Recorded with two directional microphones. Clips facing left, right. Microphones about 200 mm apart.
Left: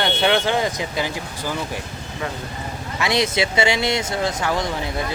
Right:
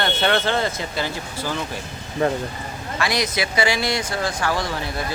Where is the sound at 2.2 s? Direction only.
35° right (ahead or behind).